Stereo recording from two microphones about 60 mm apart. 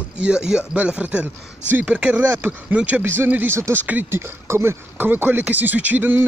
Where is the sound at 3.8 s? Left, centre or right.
Right.